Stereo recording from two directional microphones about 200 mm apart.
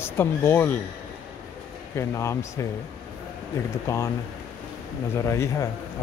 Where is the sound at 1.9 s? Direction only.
15° left (ahead or behind).